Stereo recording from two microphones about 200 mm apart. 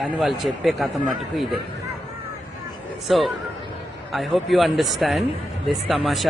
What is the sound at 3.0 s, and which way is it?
A man's voice, centre (ahead or behind).